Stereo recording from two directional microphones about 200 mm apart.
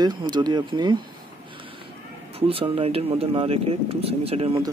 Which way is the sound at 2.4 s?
25° right (ahead or behind).